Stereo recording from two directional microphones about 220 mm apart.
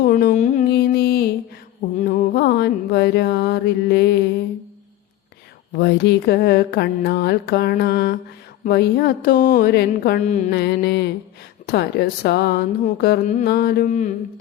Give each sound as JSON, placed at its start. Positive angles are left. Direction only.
{"t": 0.0, "sound": "music", "side_deg": 40}
{"t": 2.0, "sound": "mantra", "side_deg": 40}
{"t": 5.7, "sound": "speech", "side_deg": 50}
{"t": 10.5, "sound": "speech", "side_deg": 50}